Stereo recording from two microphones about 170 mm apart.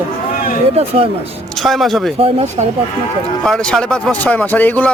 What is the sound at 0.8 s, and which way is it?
Speech, 35° right (ahead or behind).